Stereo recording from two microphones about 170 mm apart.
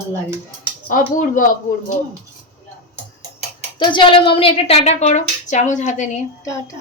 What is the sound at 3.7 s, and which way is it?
A woman's voice, 30° left (ahead or behind).